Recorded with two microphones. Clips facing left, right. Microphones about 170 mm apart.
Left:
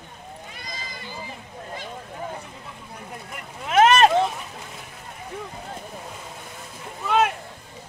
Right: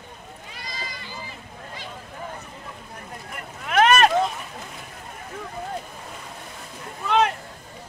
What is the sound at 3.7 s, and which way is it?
Vehicle, 25° left (ahead or behind).